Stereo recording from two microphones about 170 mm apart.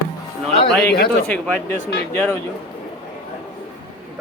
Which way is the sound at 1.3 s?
10° left (ahead or behind).